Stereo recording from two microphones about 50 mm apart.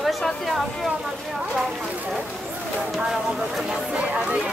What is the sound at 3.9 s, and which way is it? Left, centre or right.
Speech, right.